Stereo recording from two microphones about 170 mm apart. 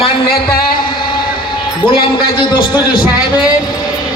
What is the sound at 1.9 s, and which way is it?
Speech, 30° left (ahead or behind).